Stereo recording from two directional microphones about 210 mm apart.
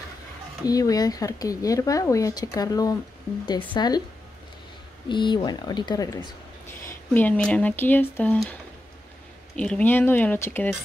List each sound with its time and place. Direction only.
0.7 s speech: 15° left (ahead or behind)
5.0 s speech: 20° left (ahead or behind)
7.2 s speech: 5° left (ahead or behind)
9.6 s speech: 5° left (ahead or behind)